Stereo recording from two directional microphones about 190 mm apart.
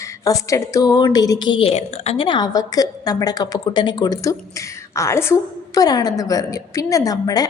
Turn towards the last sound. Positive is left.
turn(degrees=20)  # may be behind; listen again after turning